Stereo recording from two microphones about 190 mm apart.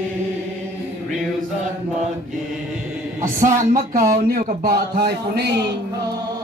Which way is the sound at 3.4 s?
45° right (ahead or behind).